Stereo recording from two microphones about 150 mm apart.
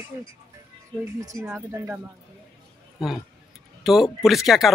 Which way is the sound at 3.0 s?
Centre (ahead or behind).